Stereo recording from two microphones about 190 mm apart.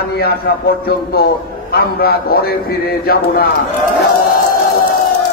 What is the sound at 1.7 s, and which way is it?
A man's voice, 55° left (ahead or behind).